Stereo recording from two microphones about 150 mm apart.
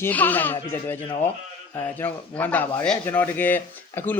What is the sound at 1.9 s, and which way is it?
Speech, 10° left (ahead or behind).